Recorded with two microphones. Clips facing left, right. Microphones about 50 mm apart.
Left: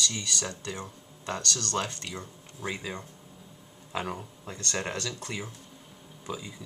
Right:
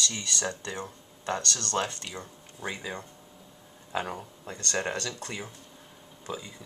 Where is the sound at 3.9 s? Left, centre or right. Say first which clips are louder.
Right 1 dB; centre.